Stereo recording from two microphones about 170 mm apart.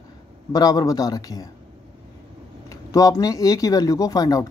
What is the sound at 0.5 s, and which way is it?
Speech, 20° left (ahead or behind).